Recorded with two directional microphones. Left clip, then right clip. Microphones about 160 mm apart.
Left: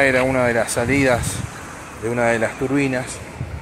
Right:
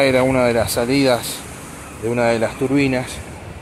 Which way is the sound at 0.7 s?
5° right (ahead or behind).